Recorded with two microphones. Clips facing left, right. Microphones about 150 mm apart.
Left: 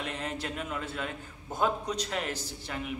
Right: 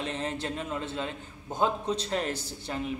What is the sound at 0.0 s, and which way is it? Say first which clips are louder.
A man's voice: right 3 dB; 30° right (ahead or behind).